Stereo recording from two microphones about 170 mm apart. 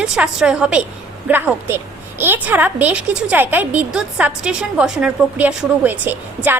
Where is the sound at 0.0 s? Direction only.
5° right (ahead or behind).